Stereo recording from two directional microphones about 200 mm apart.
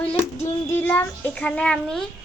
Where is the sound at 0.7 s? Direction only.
10° left (ahead or behind).